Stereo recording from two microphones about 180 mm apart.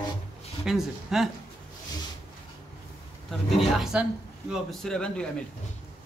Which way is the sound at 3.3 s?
Centre (ahead or behind).